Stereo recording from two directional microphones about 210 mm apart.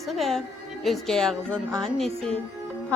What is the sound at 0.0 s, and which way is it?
Speech, centre (ahead or behind).